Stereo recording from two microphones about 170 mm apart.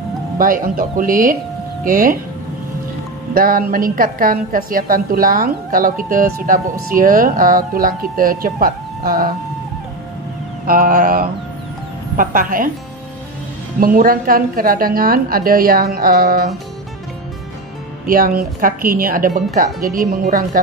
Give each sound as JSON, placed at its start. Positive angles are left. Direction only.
{"t": 0.4, "sound": "a woman's voice", "side_deg": -55}
{"t": 3.3, "sound": "a woman's voice", "side_deg": -55}
{"t": 10.7, "sound": "a woman's voice", "side_deg": -55}
{"t": 13.7, "sound": "a woman's voice", "side_deg": -55}
{"t": 18.0, "sound": "a woman's voice", "side_deg": -55}